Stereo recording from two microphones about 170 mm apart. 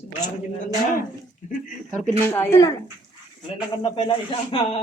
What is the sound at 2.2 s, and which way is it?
Speech, 15° left (ahead or behind).